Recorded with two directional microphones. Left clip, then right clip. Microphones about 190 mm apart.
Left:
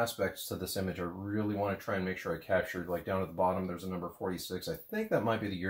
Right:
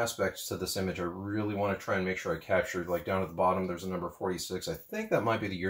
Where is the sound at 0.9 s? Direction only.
5° left (ahead or behind).